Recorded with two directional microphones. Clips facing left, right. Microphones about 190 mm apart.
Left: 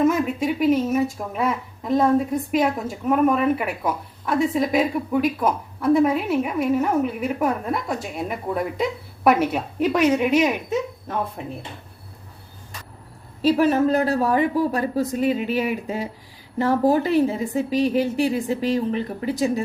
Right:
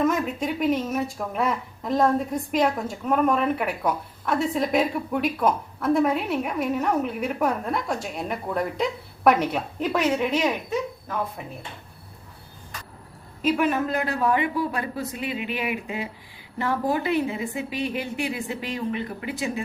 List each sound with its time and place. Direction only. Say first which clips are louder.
0.0 s speech: left 4 dB; 5° left (ahead or behind)
13.4 s speech: left 5 dB; 35° left (ahead or behind)